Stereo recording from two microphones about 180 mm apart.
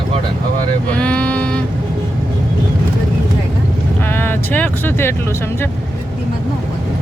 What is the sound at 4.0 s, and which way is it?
Speech, 10° left (ahead or behind).